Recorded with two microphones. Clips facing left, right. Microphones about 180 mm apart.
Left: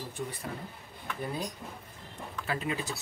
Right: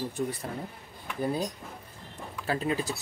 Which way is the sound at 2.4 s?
35° right (ahead or behind).